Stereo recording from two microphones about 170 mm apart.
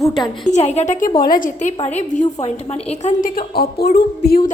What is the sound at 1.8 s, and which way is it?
A woman's voice, 40° left (ahead or behind).